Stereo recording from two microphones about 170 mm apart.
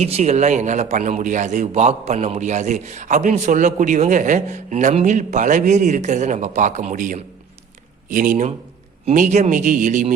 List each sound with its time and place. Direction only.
0.0 s a man's voice: 40° right (ahead or behind)